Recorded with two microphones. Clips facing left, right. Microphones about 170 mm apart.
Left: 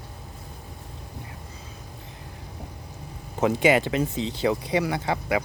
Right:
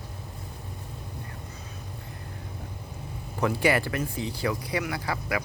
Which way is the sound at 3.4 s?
20° left (ahead or behind).